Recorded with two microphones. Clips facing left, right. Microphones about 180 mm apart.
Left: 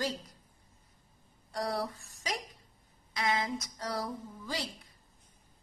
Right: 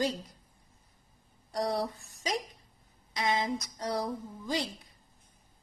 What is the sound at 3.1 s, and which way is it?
A woman's voice, 20° right (ahead or behind).